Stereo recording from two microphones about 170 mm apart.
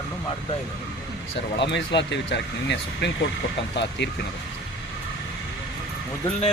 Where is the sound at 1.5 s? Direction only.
90° left.